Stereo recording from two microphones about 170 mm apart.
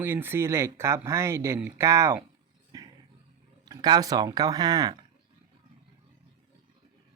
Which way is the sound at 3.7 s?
25° right (ahead or behind).